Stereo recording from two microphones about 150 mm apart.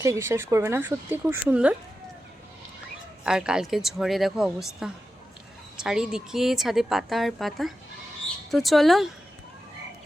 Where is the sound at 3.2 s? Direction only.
5° right (ahead or behind).